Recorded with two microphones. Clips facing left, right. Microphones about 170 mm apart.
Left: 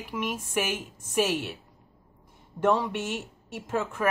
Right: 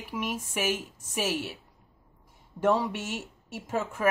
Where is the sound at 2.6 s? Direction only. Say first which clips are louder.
Left 1 dB; 5° right (ahead or behind).